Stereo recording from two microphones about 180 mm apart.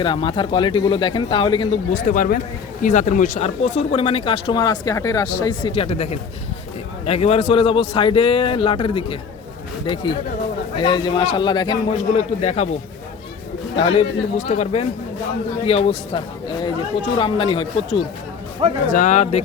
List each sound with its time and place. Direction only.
0.0 s speech: 25° left (ahead or behind)
1.9 s speech: 45° left (ahead or behind); by 12.2 s 25° left (ahead or behind)
12.4 s speech: 40° left (ahead or behind)
13.7 s speech: 35° left (ahead or behind)
18.9 s speech: 45° left (ahead or behind)